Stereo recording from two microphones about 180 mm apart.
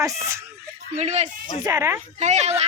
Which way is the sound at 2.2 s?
40° right (ahead or behind).